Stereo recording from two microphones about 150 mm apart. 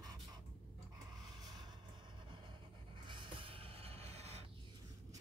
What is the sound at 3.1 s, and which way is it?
Music, 35° right (ahead or behind).